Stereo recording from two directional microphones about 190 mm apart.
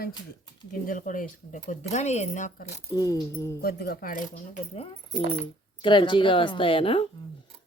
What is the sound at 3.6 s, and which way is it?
Speech, 55° left (ahead or behind).